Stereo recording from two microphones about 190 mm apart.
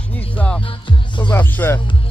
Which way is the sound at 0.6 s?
25° left (ahead or behind).